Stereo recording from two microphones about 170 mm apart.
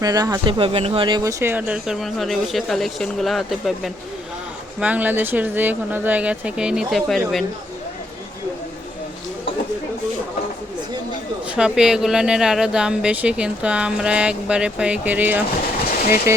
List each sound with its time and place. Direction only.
0.0 s speech: 20° right (ahead or behind)
0.6 s speech: 35° right (ahead or behind); by 7.4 s centre (ahead or behind)
11.5 s speech: 5° right (ahead or behind)